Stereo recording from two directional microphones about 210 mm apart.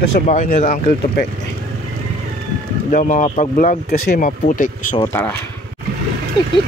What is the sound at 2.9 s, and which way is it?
Speech, 35° left (ahead or behind).